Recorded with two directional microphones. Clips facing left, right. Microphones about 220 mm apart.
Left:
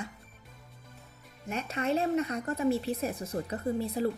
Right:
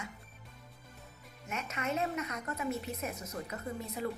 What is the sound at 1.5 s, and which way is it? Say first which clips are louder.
Speech: left 6 dB; 30° left (ahead or behind).